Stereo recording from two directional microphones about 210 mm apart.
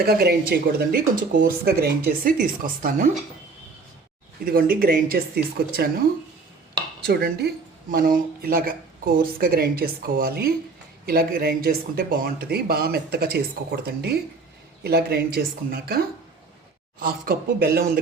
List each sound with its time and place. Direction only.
0.0 s speech: 45° right (ahead or behind)
4.4 s speech: 45° right (ahead or behind)
7.0 s speech: 50° right (ahead or behind)